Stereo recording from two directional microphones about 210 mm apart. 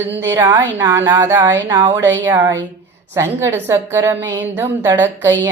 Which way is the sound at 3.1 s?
10° right (ahead or behind).